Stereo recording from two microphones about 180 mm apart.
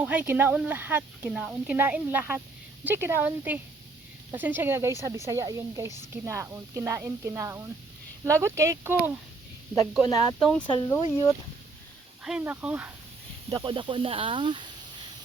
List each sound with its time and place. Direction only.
0.0 s speech: 10° right (ahead or behind)
10.4 s speech: 5° left (ahead or behind)
10.7 s speech: 20° left (ahead or behind)
12.2 s speech: 5° right (ahead or behind)
13.5 s speech: 25° right (ahead or behind)